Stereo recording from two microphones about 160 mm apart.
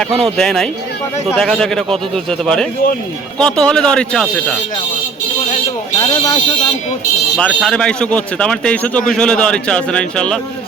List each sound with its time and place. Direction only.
0.0 s a man's voice: 5° left (ahead or behind)
6.0 s speech: 30° left (ahead or behind)
7.3 s a man's voice: 5° left (ahead or behind)